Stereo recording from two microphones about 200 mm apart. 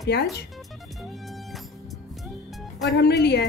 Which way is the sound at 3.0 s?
55° left (ahead or behind).